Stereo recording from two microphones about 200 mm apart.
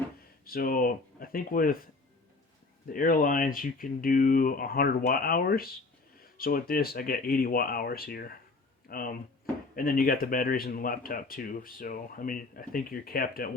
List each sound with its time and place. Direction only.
0.4 s speech: 45° left (ahead or behind)
2.9 s speech: 45° left (ahead or behind)